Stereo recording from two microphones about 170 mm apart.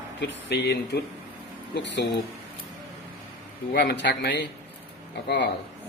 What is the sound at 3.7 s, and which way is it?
Speech, 70° left (ahead or behind).